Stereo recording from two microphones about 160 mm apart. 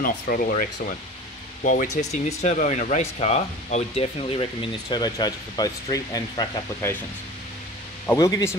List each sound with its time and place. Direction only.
0.0 s speech: 60° left (ahead or behind); by 7.0 s 15° left (ahead or behind)
8.1 s speech: 20° left (ahead or behind)